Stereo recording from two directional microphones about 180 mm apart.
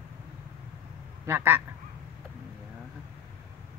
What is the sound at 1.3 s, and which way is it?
Speech, 15° right (ahead or behind).